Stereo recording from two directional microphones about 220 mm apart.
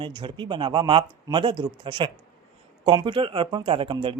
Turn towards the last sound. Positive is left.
turn(degrees=-25)  # may be behind; listen again after turning